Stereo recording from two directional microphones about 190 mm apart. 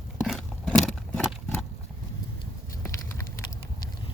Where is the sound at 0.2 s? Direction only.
Centre (ahead or behind).